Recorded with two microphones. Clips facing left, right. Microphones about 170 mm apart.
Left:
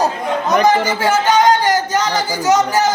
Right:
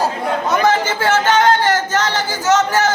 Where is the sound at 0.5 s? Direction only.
15° left (ahead or behind).